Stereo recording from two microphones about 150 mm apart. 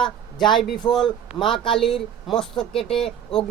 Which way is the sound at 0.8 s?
30° left (ahead or behind).